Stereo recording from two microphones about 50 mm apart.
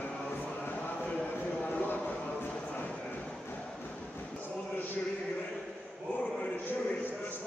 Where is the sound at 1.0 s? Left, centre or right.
Left.